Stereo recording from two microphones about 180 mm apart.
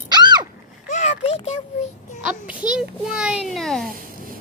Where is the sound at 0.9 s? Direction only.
35° left (ahead or behind).